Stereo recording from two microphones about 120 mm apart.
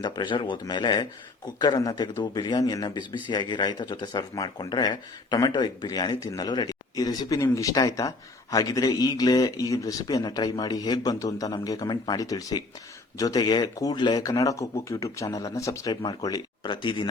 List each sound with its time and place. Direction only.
0.0 s speech: 40° left (ahead or behind)